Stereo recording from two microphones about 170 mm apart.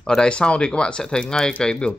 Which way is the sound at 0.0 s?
5° left (ahead or behind).